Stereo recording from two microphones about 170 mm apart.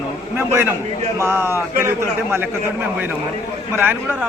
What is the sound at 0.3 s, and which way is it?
A man's voice, 10° right (ahead or behind).